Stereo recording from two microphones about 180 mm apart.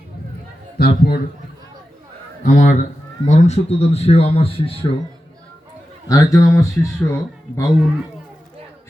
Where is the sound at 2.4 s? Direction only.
45° left (ahead or behind); by 4.9 s 30° left (ahead or behind).